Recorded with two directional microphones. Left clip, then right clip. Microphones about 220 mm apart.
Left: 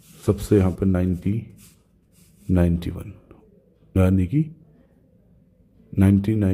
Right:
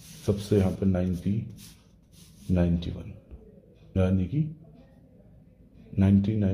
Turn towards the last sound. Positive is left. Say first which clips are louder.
# left 5 dB
turn(degrees=35)  # may be behind; listen again after turning